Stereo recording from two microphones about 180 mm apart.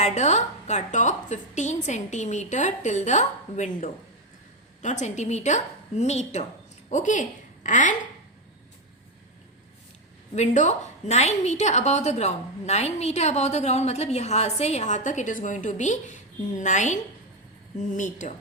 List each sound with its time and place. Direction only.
0.0 s a woman's voice: 40° left (ahead or behind)
4.8 s a woman's voice: 40° left (ahead or behind)
10.3 s a woman's voice: 40° left (ahead or behind)